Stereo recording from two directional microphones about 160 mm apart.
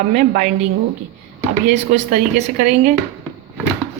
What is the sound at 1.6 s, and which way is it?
Speech, 50° right (ahead or behind).